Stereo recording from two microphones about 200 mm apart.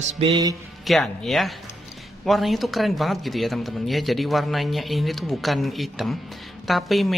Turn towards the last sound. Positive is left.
turn(degrees=0)  # may be behind; listen again after turning